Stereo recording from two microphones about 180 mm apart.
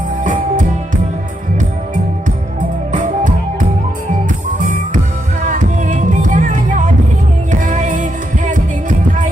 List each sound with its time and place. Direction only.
2.9 s music: 45° right (ahead or behind)